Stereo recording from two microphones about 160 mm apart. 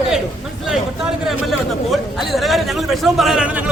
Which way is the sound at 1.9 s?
Centre (ahead or behind).